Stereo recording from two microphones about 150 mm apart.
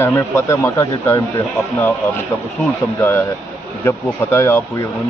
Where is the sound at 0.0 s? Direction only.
15° left (ahead or behind).